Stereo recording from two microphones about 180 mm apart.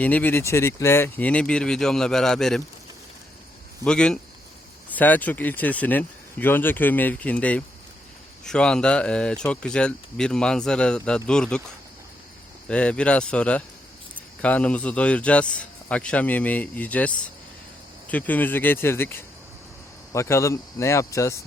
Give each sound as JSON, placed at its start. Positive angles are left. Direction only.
{"t": 0.0, "sound": "a man's voice", "side_deg": 10}
{"t": 3.8, "sound": "a man's voice", "side_deg": 5}
{"t": 12.6, "sound": "a man's voice", "side_deg": 5}